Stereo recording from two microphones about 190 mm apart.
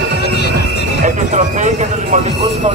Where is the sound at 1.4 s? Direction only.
40° right (ahead or behind).